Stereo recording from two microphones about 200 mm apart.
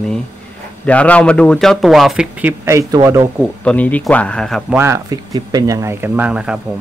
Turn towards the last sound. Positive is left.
turn(degrees=-5)  # may be behind; listen again after turning